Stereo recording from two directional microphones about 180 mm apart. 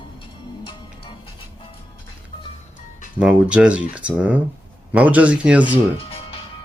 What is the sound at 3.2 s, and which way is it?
Speech, 5° right (ahead or behind).